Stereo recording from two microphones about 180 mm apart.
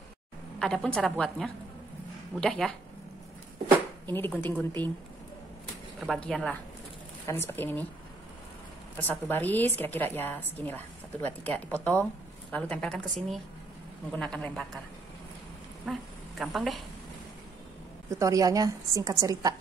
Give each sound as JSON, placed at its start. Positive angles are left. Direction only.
{"t": 0.6, "sound": "a woman's voice", "side_deg": 5}
{"t": 4.1, "sound": "a woman's voice", "side_deg": 10}
{"t": 5.9, "sound": "a woman's voice", "side_deg": 5}
{"t": 8.9, "sound": "a woman's voice", "side_deg": 10}
{"t": 14.1, "sound": "a woman's voice", "side_deg": 5}
{"t": 15.8, "sound": "speech", "side_deg": 0}
{"t": 18.2, "sound": "a woman's voice", "side_deg": -20}